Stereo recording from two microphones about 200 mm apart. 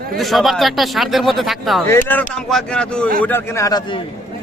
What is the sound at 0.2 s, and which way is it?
A man's voice, centre (ahead or behind).